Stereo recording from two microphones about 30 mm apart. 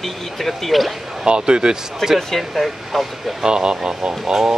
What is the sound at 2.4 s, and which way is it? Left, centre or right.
Speech, centre.